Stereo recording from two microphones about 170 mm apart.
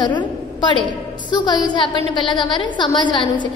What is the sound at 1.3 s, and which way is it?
A woman's voice, 25° left (ahead or behind).